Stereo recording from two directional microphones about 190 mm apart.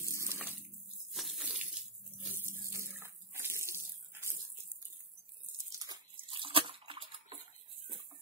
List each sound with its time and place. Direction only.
0.0 s water: 15° right (ahead or behind)
1.1 s a sound: centre (ahead or behind)
2.7 s bathtub: 15° right (ahead or behind)
5.7 s bathtub: 20° right (ahead or behind)